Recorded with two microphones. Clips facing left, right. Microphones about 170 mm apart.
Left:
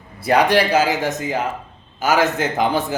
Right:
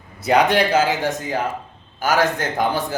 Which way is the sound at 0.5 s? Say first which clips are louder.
Left 1 dB; centre (ahead or behind).